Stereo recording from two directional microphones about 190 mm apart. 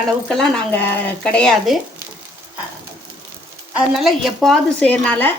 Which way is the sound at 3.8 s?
Centre (ahead or behind).